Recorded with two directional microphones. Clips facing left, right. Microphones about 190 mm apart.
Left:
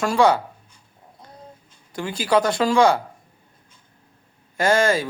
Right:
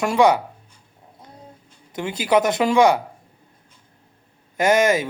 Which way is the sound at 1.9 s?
20° right (ahead or behind).